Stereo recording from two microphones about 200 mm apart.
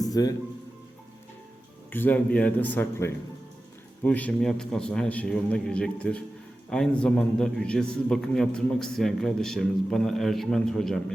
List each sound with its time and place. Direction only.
0.1 s speech: 20° left (ahead or behind)
1.9 s a man's voice: 10° left (ahead or behind)